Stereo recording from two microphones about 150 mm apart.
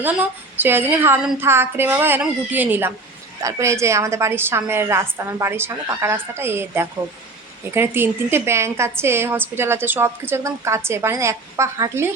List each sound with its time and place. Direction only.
0.0 s a woman's voice: 15° right (ahead or behind)